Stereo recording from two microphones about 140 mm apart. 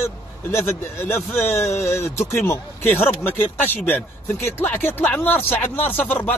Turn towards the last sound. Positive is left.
turn(degrees=10)  # may be behind; listen again after turning